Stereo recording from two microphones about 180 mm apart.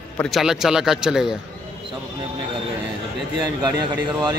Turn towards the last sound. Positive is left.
turn(degrees=-20)  # may be behind; listen again after turning